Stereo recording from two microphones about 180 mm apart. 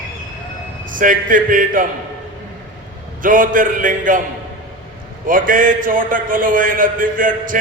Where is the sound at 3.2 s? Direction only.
50° right (ahead or behind).